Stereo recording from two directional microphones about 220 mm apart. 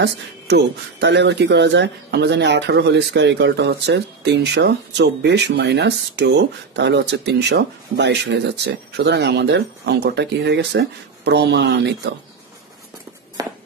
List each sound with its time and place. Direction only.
0.0 s speech: 50° right (ahead or behind)
13.4 s walk: 15° right (ahead or behind)